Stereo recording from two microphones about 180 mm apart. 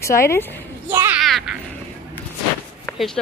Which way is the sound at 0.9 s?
15° right (ahead or behind).